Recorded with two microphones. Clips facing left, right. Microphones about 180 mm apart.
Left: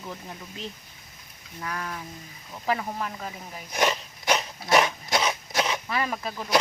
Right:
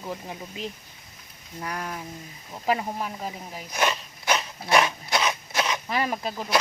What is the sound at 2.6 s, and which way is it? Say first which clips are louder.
Speech: right 2 dB; 15° right (ahead or behind).